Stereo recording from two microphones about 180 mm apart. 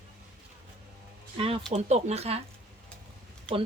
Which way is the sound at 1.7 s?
40° right (ahead or behind).